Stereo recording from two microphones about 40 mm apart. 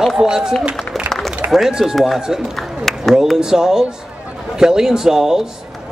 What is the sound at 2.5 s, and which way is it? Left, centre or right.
Speech, centre.